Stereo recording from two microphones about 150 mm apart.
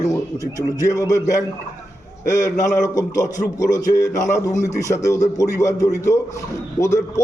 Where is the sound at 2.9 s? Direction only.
20° left (ahead or behind).